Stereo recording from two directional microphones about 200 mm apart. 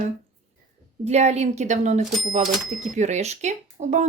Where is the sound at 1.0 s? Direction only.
35° right (ahead or behind).